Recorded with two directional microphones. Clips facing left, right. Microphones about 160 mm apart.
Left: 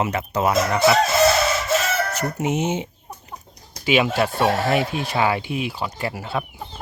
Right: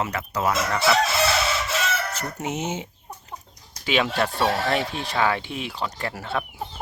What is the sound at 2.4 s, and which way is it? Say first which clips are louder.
Speech: left 6 dB; 15° left (ahead or behind).